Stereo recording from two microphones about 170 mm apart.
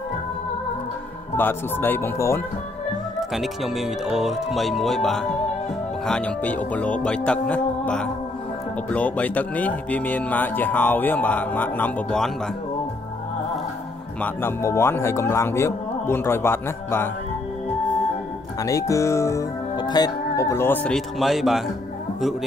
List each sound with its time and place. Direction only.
1.3 s speech: 15° left (ahead or behind)
3.2 s speech: centre (ahead or behind)
14.2 s speech: 15° left (ahead or behind)
18.6 s speech: 20° left (ahead or behind); by 21.6 s centre (ahead or behind)